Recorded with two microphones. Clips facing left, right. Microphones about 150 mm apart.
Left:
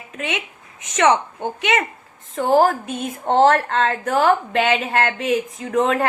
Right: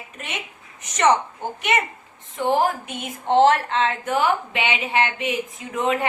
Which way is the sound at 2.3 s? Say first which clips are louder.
Left 5 dB; 40° left (ahead or behind).